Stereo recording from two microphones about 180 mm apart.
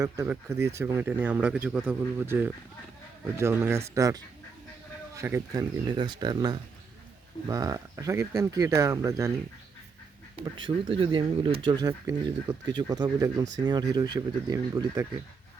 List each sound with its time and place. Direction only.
0.0 s speech: 15° right (ahead or behind)
10.3 s speech: 30° right (ahead or behind)